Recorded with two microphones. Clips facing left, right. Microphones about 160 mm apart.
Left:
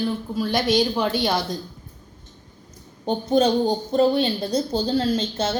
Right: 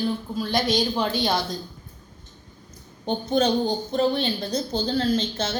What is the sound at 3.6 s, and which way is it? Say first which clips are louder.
Speech: left 4 dB; 35° left (ahead or behind).